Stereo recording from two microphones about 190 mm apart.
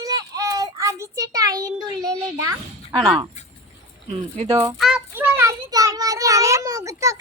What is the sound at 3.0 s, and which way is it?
Speech, 5° right (ahead or behind).